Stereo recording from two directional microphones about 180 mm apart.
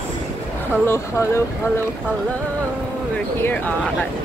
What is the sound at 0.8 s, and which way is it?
Speech, 15° left (ahead or behind).